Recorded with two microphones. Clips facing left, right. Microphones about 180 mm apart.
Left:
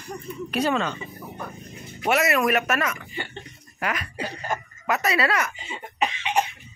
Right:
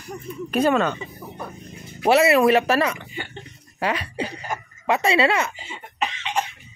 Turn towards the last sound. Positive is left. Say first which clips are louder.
# left 2 dB
turn(degrees=15)  # may be behind; listen again after turning